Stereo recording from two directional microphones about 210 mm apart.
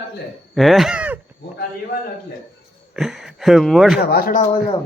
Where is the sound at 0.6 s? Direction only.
Centre (ahead or behind).